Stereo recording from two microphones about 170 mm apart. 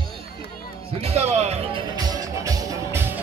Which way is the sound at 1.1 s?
40° right (ahead or behind).